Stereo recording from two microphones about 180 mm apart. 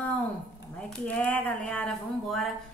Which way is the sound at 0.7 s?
5° left (ahead or behind).